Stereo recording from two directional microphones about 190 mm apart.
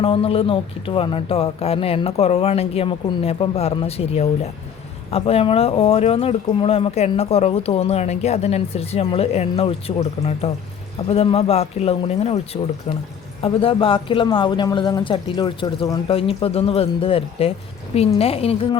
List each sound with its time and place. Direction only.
0.0 s speech: 30° left (ahead or behind)
13.4 s speech: 30° left (ahead or behind)